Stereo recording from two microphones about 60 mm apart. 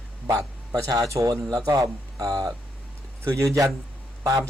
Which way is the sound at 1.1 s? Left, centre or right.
Right.